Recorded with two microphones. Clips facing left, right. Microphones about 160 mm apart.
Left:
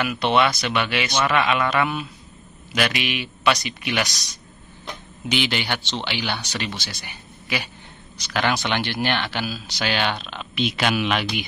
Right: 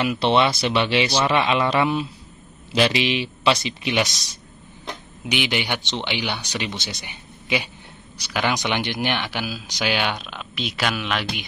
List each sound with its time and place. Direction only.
0.0 s a man's voice: 30° right (ahead or behind)
5.3 s speech: 15° right (ahead or behind); by 11.2 s centre (ahead or behind)